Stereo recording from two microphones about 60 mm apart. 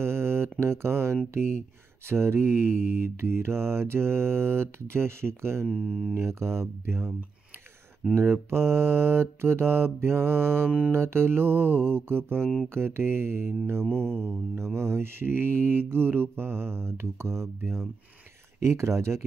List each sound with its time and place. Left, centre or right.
0.0 s a sound: right
1.3 s mantra: right
5.7 s speech: centre
6.1 s mantra: right
8.2 s mantra: right
13.8 s mantra: centre
14.8 s mantra: right